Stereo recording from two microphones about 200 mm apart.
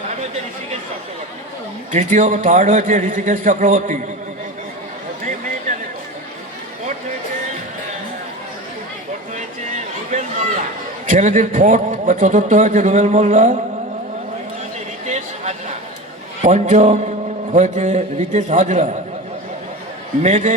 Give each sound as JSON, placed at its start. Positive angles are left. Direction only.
{"t": 1.9, "sound": "a man's voice", "side_deg": -40}
{"t": 9.7, "sound": "a sound", "side_deg": -35}
{"t": 11.0, "sound": "a man's voice", "side_deg": -40}
{"t": 15.0, "sound": "a sound", "side_deg": -35}
{"t": 16.4, "sound": "a man's voice", "side_deg": -35}
{"t": 20.2, "sound": "a man's voice", "side_deg": -35}